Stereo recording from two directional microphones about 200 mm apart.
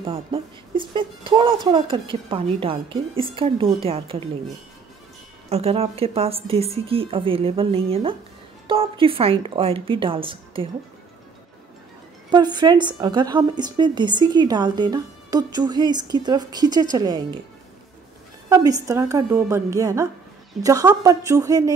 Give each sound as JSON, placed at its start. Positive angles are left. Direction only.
{"t": 0.0, "sound": "a woman's voice", "side_deg": -25}
{"t": 5.5, "sound": "a woman's voice", "side_deg": -30}
{"t": 12.3, "sound": "a woman's voice", "side_deg": -20}
{"t": 18.5, "sound": "a woman's voice", "side_deg": -15}